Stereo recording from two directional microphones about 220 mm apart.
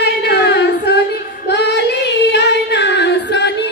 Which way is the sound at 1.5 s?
50° left (ahead or behind).